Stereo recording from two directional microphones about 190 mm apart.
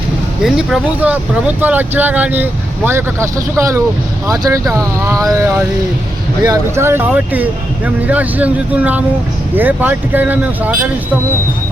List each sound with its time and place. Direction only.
0.4 s speech: centre (ahead or behind)
6.4 s speech: 15° right (ahead or behind)